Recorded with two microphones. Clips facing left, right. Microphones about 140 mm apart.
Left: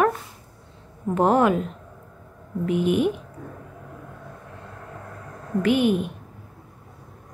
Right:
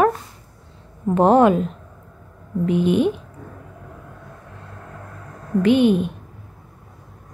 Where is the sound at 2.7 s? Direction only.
25° right (ahead or behind).